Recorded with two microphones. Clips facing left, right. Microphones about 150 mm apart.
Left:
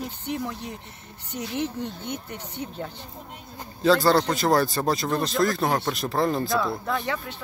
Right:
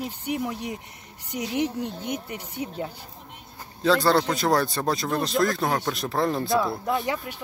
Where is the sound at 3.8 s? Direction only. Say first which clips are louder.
Left 1 dB; centre (ahead or behind).